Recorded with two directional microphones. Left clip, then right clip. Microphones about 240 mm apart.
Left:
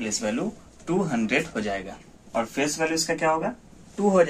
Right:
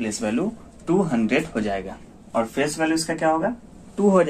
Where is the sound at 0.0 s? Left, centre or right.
Centre.